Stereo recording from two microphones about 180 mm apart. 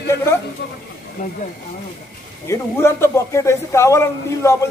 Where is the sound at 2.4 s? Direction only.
15° left (ahead or behind).